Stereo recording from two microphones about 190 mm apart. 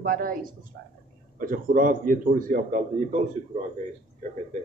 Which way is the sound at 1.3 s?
45° right (ahead or behind).